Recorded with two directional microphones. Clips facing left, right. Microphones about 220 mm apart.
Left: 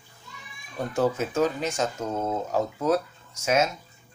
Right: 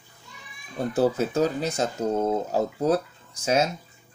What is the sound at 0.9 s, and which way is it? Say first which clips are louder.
Speech: right 2 dB; 35° right (ahead or behind).